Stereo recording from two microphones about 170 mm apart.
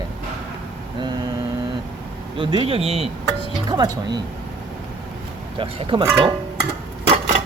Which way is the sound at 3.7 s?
25° right (ahead or behind).